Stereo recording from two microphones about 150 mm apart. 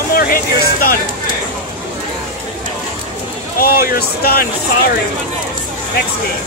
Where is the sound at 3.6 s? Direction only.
80° left.